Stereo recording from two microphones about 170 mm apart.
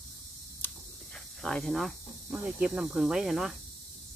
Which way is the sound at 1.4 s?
Centre (ahead or behind).